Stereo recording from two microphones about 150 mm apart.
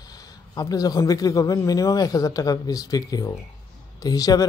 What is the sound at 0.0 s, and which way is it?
Speech, 25° left (ahead or behind).